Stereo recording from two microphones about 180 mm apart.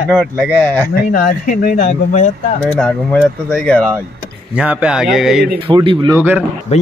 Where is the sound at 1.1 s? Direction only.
50° left (ahead or behind).